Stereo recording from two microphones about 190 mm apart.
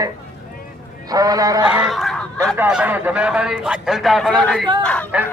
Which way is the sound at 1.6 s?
5° right (ahead or behind).